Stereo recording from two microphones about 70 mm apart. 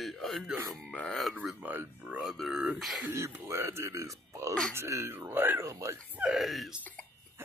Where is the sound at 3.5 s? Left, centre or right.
Right.